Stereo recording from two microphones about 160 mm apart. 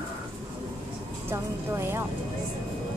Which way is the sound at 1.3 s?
15° right (ahead or behind).